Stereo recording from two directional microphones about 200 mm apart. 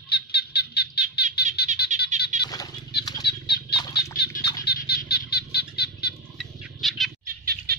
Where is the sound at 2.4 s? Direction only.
20° left (ahead or behind).